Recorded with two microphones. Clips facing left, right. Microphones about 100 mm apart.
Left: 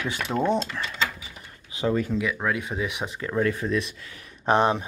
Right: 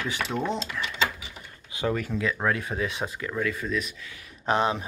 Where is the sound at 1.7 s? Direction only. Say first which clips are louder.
Left 3 dB; 25° left (ahead or behind).